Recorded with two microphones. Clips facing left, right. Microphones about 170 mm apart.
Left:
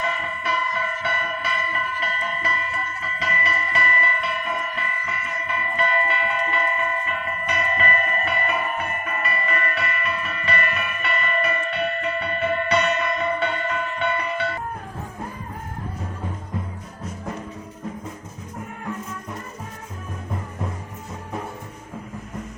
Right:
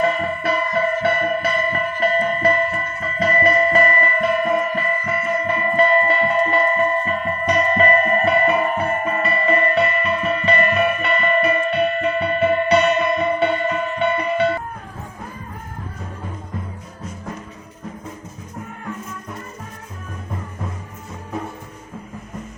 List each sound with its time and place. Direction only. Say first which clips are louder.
0.0 s music: right 8 dB; 40° right (ahead or behind); by 14.5 s 20° right (ahead or behind)